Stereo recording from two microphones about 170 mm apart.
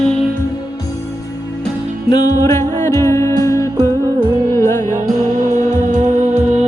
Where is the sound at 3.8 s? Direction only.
30° right (ahead or behind).